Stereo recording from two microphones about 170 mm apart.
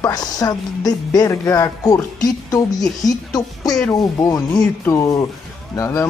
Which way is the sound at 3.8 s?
15° left (ahead or behind).